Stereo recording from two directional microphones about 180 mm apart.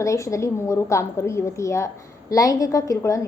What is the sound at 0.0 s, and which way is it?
A woman's voice, 15° left (ahead or behind).